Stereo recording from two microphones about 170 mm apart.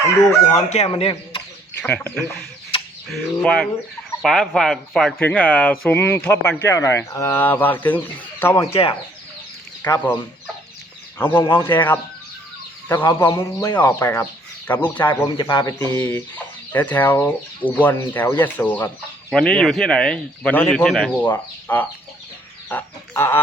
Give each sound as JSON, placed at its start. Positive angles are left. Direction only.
{"t": 0.5, "sound": "speech", "side_deg": 40}
{"t": 1.8, "sound": "speech", "side_deg": 5}
{"t": 8.7, "sound": "speech", "side_deg": 35}
{"t": 10.0, "sound": "speech", "side_deg": 10}
{"t": 15.4, "sound": "speech", "side_deg": 25}
{"t": 16.0, "sound": "speech", "side_deg": 10}
{"t": 20.8, "sound": "speech", "side_deg": 0}
{"t": 21.1, "sound": "speech", "side_deg": 10}